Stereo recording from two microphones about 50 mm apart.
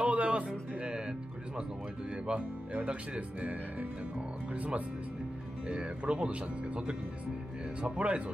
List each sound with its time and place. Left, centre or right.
0.0 s music: right
2.2 s speech: right
4.6 s speech: right